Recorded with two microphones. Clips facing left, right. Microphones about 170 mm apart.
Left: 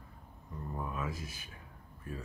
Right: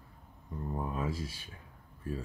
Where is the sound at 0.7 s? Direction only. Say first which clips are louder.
Right 3 dB; 30° right (ahead or behind).